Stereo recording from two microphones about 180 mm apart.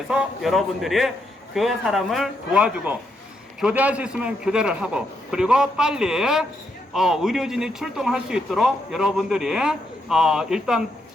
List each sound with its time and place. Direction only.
0.1 s speech: centre (ahead or behind)